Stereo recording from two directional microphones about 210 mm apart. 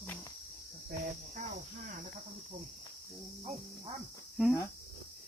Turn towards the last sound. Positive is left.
turn(degrees=0)  # may be behind; listen again after turning